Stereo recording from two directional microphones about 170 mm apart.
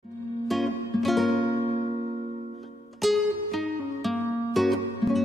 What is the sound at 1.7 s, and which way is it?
Music, 40° right (ahead or behind).